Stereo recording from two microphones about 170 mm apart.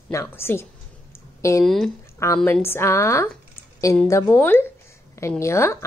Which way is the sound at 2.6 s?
15° left (ahead or behind).